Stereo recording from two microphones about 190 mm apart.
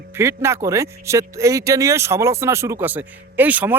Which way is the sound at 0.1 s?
15° right (ahead or behind).